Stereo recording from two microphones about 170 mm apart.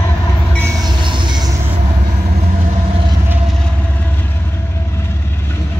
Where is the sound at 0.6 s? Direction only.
25° right (ahead or behind).